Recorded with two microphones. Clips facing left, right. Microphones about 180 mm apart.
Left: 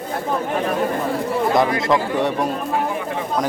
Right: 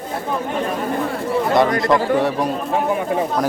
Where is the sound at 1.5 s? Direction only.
Centre (ahead or behind).